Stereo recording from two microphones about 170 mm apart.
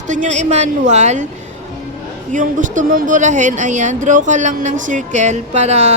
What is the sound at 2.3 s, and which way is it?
Speech, 50° right (ahead or behind).